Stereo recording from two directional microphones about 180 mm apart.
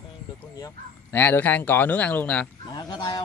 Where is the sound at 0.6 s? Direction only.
15° left (ahead or behind).